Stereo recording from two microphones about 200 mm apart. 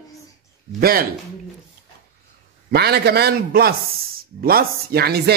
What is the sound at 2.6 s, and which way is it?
A man's voice, 55° right (ahead or behind).